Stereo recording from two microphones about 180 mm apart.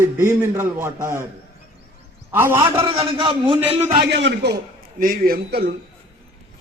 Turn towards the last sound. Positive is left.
turn(degrees=-65)  # may be behind; listen again after turning